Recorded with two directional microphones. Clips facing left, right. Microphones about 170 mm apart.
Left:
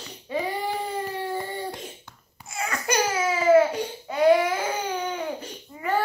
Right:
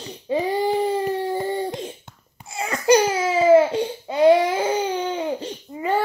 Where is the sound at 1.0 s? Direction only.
25° right (ahead or behind).